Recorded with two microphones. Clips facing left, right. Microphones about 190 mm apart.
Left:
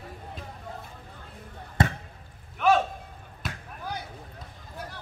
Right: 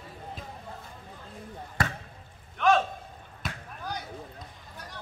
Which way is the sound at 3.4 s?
Centre (ahead or behind).